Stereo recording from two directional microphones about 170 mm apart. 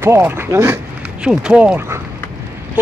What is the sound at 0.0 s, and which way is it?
Speech, 15° right (ahead or behind).